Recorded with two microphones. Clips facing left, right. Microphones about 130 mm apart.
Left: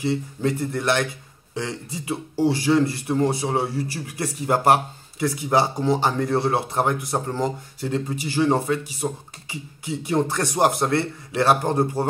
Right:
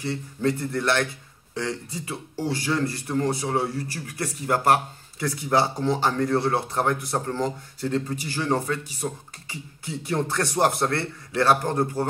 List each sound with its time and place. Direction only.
0.0 s speech: 15° left (ahead or behind)
2.3 s speech: 25° left (ahead or behind)